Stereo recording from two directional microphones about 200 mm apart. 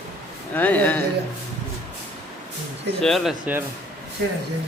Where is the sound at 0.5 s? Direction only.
10° left (ahead or behind).